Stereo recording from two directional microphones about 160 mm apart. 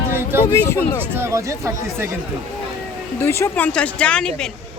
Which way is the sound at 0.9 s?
15° right (ahead or behind).